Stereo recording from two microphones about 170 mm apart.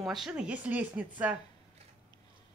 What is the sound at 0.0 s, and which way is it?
Speech, centre (ahead or behind).